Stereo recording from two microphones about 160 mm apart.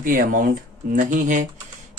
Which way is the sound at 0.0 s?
60° right (ahead or behind).